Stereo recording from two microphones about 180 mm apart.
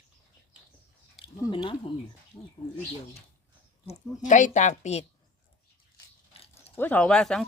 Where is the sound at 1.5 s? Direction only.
30° left (ahead or behind).